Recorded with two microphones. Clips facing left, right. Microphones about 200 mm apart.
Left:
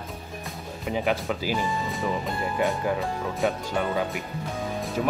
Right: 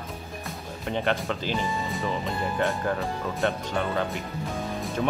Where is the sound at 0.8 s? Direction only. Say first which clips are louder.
Left 1 dB; 5° left (ahead or behind).